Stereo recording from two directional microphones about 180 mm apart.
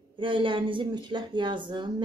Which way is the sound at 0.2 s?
30° right (ahead or behind).